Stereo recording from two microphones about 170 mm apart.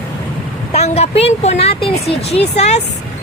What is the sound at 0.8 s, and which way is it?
Speech, 35° left (ahead or behind).